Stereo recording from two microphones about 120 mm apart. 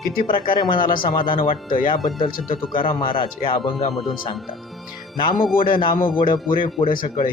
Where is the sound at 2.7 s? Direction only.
45° left (ahead or behind).